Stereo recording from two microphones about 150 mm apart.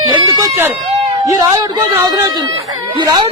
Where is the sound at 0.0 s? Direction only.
20° right (ahead or behind).